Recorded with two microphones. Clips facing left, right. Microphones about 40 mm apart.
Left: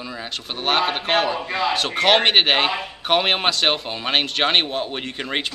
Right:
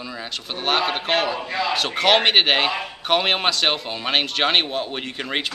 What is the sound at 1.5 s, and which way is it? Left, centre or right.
Speech, centre.